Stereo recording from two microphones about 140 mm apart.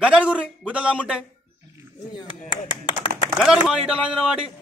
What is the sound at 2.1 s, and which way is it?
Speech, 35° left (ahead or behind).